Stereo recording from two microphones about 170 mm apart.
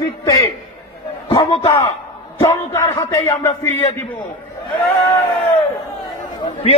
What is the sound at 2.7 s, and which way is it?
Speech, 20° left (ahead or behind).